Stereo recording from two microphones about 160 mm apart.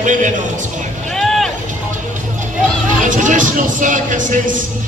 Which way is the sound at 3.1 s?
55° right (ahead or behind).